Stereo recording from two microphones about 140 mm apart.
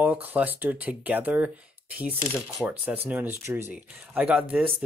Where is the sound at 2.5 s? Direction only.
Centre (ahead or behind).